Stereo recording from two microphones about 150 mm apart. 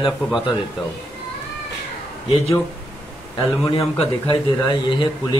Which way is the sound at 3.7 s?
40° left (ahead or behind).